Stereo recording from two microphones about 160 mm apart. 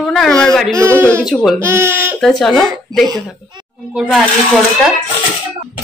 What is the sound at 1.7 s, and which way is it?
Speech, 15° right (ahead or behind).